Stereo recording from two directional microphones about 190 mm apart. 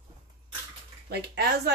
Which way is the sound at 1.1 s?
60° right (ahead or behind).